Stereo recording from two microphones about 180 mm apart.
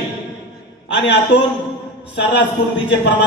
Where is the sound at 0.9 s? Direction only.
75° left (ahead or behind).